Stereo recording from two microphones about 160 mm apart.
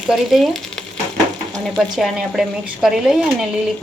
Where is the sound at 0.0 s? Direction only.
Centre (ahead or behind).